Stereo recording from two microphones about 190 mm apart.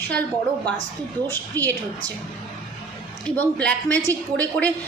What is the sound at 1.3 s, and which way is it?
Speech, 10° left (ahead or behind).